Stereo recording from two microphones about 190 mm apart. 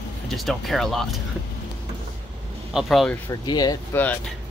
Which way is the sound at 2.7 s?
Centre (ahead or behind).